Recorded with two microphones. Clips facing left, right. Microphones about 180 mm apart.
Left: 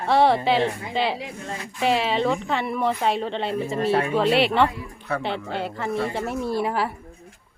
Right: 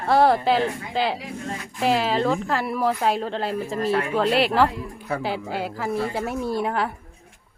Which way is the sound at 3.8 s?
30° left (ahead or behind).